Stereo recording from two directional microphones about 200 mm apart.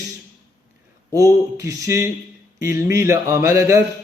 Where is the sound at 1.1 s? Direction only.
15° right (ahead or behind).